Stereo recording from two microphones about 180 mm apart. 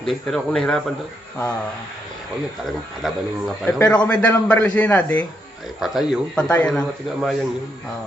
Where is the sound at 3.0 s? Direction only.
5° left (ahead or behind).